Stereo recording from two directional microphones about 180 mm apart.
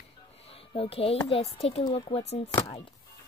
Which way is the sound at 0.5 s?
30° left (ahead or behind).